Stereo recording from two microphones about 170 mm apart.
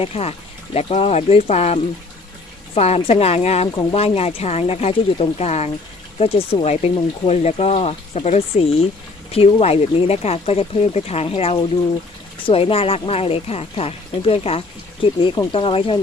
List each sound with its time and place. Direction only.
0.0 s speech: 35° left (ahead or behind)